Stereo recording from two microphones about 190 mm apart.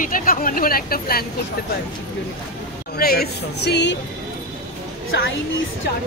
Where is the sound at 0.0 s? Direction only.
45° left (ahead or behind).